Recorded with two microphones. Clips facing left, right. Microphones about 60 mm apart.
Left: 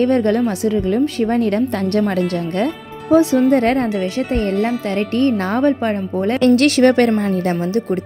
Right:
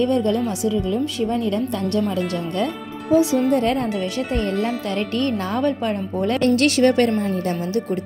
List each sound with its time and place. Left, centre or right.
0.0 s speech: left
3.5 s a woman's voice: left
5.1 s a woman's voice: left
6.5 s speech: left